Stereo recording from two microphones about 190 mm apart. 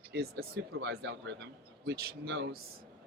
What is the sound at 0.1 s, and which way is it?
Speech, 55° right (ahead or behind).